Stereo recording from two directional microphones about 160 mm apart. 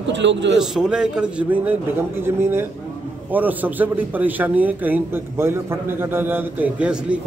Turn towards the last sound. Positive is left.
turn(degrees=-5)  # may be behind; listen again after turning